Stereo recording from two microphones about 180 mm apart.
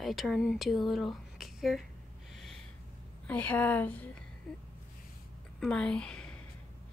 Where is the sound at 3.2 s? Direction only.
10° left (ahead or behind).